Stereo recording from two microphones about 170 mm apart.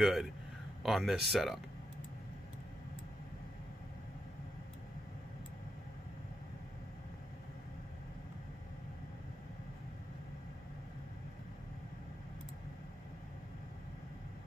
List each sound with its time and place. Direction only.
0.0 s speech: centre (ahead or behind)